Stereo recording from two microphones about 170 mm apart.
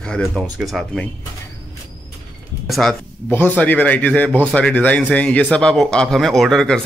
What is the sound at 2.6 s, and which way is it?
Speech, centre (ahead or behind).